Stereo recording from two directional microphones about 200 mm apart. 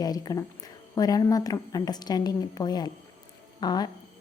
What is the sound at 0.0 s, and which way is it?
A woman's voice, 20° left (ahead or behind).